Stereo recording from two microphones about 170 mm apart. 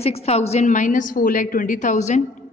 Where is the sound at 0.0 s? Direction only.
35° left (ahead or behind).